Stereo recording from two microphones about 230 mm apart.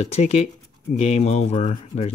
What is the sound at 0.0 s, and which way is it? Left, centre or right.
Speech, left.